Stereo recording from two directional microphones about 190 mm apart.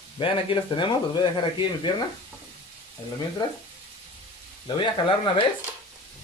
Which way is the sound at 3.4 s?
20° left (ahead or behind).